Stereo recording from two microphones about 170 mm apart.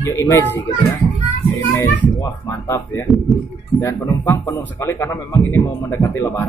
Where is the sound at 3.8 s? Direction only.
15° left (ahead or behind).